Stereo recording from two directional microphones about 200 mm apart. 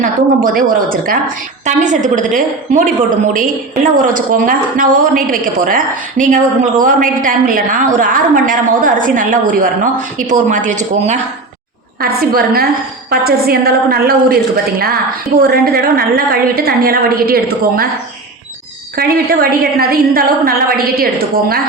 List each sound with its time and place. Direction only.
0.0 s a woman's voice: 45° right (ahead or behind)
4.0 s a woman's voice: 45° right (ahead or behind)
11.9 s a woman's voice: 50° right (ahead or behind)
18.9 s a woman's voice: 50° right (ahead or behind)